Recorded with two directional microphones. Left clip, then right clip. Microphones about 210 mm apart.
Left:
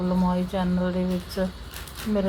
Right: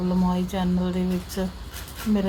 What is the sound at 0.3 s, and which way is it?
A woman's voice, 5° right (ahead or behind).